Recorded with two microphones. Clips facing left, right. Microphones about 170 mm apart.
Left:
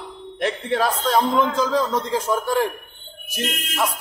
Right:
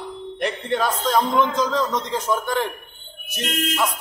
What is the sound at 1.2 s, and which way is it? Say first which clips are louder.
Speech: even; 30° left (ahead or behind).